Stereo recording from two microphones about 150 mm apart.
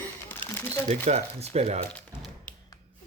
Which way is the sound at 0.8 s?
50° right (ahead or behind).